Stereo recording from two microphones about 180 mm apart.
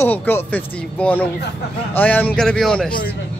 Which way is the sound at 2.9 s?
55° left (ahead or behind).